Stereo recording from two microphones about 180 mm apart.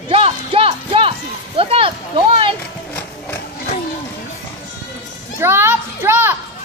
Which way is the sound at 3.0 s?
10° left (ahead or behind).